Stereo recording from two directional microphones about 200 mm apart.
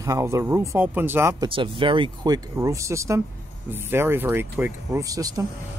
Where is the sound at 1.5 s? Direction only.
25° right (ahead or behind).